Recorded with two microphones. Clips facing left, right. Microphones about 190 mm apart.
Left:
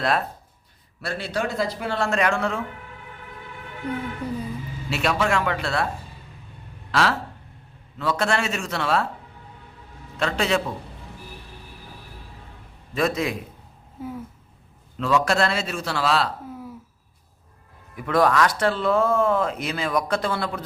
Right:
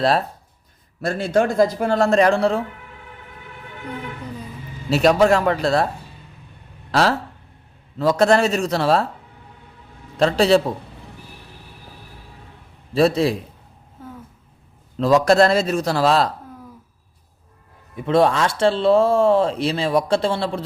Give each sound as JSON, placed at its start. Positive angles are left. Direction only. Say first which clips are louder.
{"t": 0.0, "sound": "a man's voice", "louder": "right 5 dB", "side_deg": -35}
{"t": 1.0, "sound": "speech", "louder": "right 8 dB", "side_deg": -45}
{"t": 4.2, "sound": "vehicle", "louder": "left 4 dB", "side_deg": 10}
{"t": 4.9, "sound": "a man's voice", "louder": "right 9 dB", "side_deg": -40}
{"t": 6.9, "sound": "a man's voice", "louder": "right 4 dB", "side_deg": -40}
{"t": 10.2, "sound": "a man's voice", "louder": "right 8 dB", "side_deg": -35}
{"t": 12.9, "sound": "a man's voice", "louder": "right 7 dB", "side_deg": -30}
{"t": 14.0, "sound": "a sound", "louder": "left 5 dB", "side_deg": 10}
{"t": 14.9, "sound": "a man's voice", "louder": "right 7 dB", "side_deg": -35}
{"t": 17.9, "sound": "speech", "louder": "right 3 dB", "side_deg": -25}